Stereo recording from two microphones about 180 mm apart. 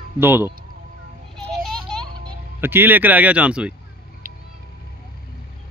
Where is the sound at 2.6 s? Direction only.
10° right (ahead or behind).